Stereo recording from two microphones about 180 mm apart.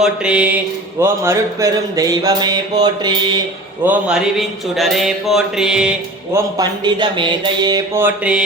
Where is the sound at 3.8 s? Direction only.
5° right (ahead or behind).